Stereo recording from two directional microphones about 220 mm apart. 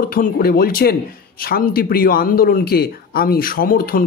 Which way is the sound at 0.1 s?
40° left (ahead or behind).